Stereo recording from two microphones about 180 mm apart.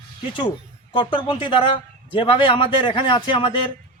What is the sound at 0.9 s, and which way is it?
A man's voice, 25° left (ahead or behind).